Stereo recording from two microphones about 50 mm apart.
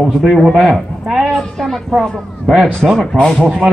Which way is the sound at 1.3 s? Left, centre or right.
Centre.